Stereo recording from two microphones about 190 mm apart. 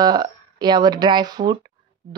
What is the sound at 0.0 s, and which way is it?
Speech, 20° right (ahead or behind).